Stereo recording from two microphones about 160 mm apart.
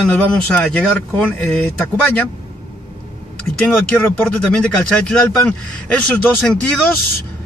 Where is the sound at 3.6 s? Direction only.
5° left (ahead or behind).